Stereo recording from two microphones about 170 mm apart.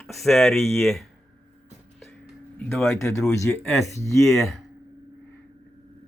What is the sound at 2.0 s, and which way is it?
Music, centre (ahead or behind).